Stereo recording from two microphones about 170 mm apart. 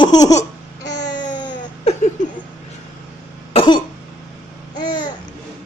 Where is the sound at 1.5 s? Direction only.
40° left (ahead or behind).